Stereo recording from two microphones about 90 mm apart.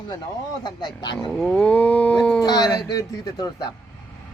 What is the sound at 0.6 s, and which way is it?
Speech, 55° left (ahead or behind).